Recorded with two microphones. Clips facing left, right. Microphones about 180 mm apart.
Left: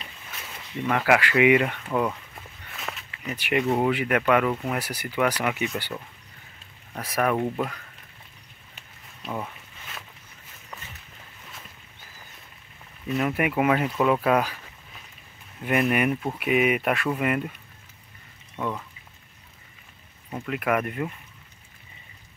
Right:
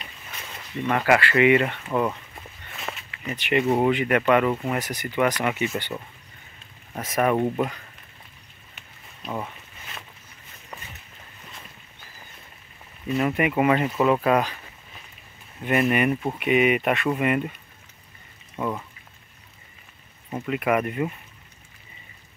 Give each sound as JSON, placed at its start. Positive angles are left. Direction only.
{"t": 0.7, "sound": "speech", "side_deg": 0}
{"t": 1.9, "sound": "speech", "side_deg": -5}
{"t": 9.2, "sound": "speech", "side_deg": 0}
{"t": 10.7, "sound": "a sound", "side_deg": -5}
{"t": 13.1, "sound": "speech", "side_deg": 0}
{"t": 15.6, "sound": "speech", "side_deg": 0}
{"t": 18.6, "sound": "speech", "side_deg": -5}
{"t": 20.2, "sound": "speech", "side_deg": -5}